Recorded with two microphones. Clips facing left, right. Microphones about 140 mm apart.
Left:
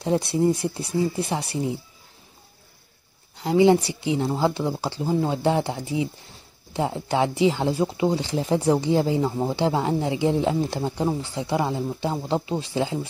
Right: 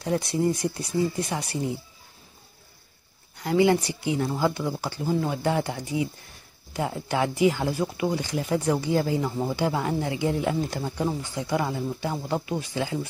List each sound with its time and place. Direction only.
0.1 s speech: 25° left (ahead or behind)
3.3 s speech: 20° left (ahead or behind)